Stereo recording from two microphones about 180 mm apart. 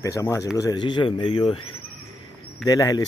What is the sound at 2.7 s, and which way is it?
Speech, 20° left (ahead or behind).